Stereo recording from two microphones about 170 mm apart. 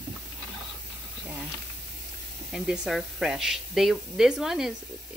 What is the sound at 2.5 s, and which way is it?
Speech, 5° right (ahead or behind).